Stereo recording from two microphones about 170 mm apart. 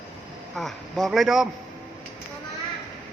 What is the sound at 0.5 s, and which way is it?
Speech, centre (ahead or behind).